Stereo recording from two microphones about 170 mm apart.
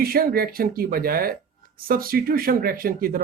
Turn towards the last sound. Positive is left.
turn(degrees=-55)  # may be behind; listen again after turning